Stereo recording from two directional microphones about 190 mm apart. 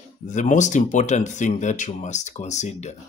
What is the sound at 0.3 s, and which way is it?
Speech, 40° left (ahead or behind).